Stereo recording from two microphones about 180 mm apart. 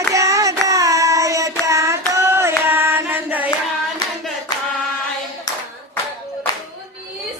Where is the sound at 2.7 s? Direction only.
10° right (ahead or behind).